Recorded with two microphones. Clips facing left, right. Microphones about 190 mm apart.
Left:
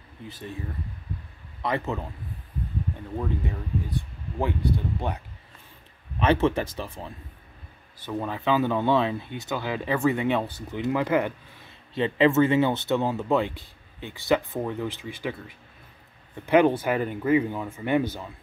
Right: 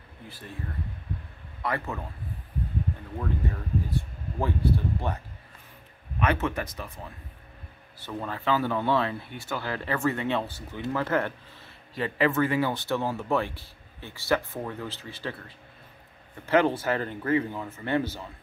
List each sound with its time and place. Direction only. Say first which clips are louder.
1.6 s speech: left 3 dB; 20° left (ahead or behind)
3.9 s speech: even; 15° left (ahead or behind)
6.1 s speech: left 5 dB; 30° left (ahead or behind)
8.0 s speech: left 4 dB; 15° left (ahead or behind)